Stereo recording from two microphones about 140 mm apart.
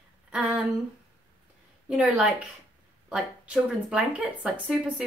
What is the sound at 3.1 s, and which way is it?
Speech, 5° right (ahead or behind).